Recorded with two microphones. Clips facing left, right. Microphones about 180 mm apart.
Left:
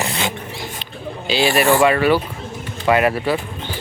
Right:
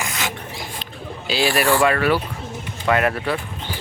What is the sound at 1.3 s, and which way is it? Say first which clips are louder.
Speech: left 3 dB; centre (ahead or behind).